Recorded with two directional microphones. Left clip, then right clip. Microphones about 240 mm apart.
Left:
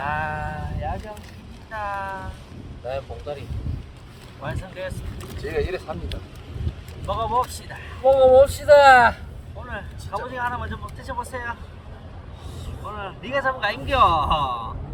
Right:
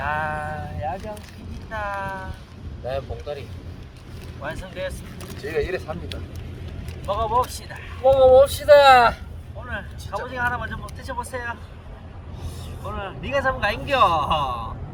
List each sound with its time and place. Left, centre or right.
0.0 s a sound: centre
1.7 s a man's voice: centre
3.3 s speech: centre
4.4 s a man's voice: centre
5.4 s speech: centre
7.1 s a man's voice: centre
8.0 s speech: centre
9.6 s a man's voice: centre
12.8 s a man's voice: centre